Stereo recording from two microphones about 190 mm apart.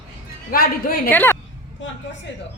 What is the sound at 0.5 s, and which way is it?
Speech, 50° left (ahead or behind).